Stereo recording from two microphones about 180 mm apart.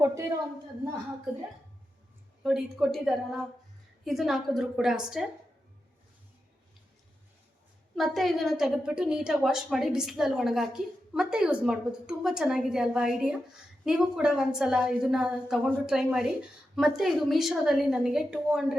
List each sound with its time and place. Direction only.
0.0 s a woman's voice: 15° right (ahead or behind)
2.4 s a woman's voice: centre (ahead or behind)
7.9 s a woman's voice: centre (ahead or behind)